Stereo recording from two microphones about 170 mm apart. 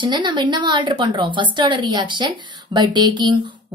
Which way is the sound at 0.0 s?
25° right (ahead or behind).